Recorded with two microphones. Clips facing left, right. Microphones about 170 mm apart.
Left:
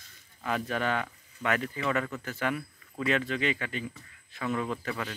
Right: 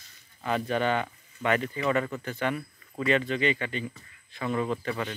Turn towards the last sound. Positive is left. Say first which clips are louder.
# right 3 dB
turn(degrees=0)  # may be behind; listen again after turning